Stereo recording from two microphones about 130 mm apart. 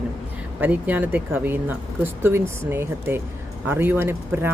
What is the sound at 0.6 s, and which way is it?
Speech, 10° right (ahead or behind).